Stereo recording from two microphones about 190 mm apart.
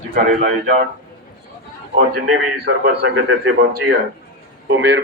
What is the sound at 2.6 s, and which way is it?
A man's voice, 55° right (ahead or behind).